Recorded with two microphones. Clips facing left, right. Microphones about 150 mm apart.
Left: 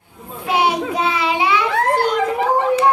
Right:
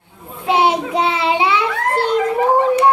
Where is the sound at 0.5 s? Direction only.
25° right (ahead or behind).